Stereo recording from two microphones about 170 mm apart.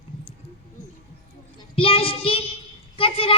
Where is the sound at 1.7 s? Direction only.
35° left (ahead or behind).